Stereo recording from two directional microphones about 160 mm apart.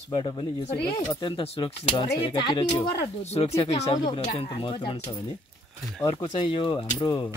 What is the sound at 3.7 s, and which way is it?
Speech, 30° left (ahead or behind).